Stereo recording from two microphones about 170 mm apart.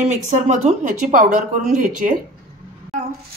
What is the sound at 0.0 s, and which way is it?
Speech, 40° right (ahead or behind).